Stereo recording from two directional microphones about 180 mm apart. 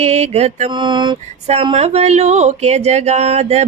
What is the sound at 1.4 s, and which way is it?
Speech, 35° right (ahead or behind).